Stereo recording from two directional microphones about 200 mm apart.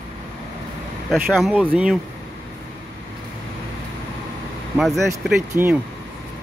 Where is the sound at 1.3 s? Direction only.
5° right (ahead or behind).